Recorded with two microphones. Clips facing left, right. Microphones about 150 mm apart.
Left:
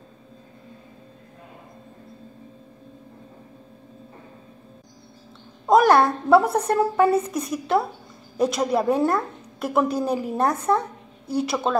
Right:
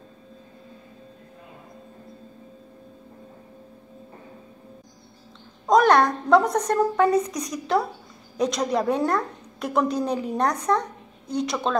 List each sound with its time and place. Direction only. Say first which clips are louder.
5.7 s a woman's voice: left 1 dB; 5° left (ahead or behind)